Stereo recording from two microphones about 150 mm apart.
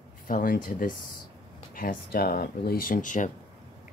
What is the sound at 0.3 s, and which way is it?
Speech, 70° left (ahead or behind).